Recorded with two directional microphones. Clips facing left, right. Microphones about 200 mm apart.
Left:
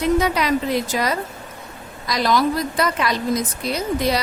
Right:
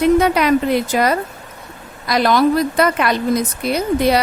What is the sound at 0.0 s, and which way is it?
A woman's voice, 60° right (ahead or behind).